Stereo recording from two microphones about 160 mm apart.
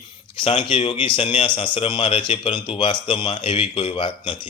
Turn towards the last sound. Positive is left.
turn(degrees=30)  # may be behind; listen again after turning